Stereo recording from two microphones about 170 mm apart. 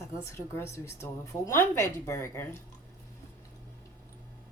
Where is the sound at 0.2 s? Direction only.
15° left (ahead or behind).